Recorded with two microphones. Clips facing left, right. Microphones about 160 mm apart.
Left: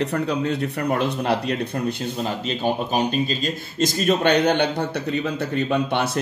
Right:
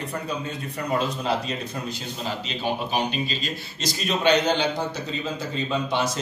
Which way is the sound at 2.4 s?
50° left (ahead or behind).